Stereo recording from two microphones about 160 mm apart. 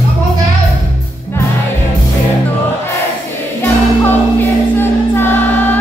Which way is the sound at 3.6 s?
15° left (ahead or behind).